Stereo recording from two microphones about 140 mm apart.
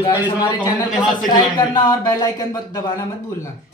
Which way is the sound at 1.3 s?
25° left (ahead or behind).